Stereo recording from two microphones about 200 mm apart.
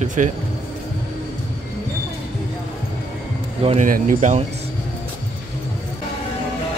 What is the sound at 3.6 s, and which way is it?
Speech, 30° right (ahead or behind).